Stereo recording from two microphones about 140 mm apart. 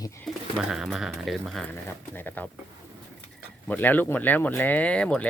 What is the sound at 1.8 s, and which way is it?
Speech, 15° left (ahead or behind).